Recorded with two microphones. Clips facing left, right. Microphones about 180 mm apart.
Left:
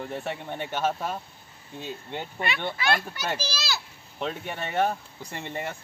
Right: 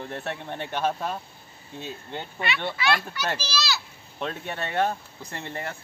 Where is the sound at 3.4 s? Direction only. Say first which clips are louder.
Right 3 dB; 50° left (ahead or behind).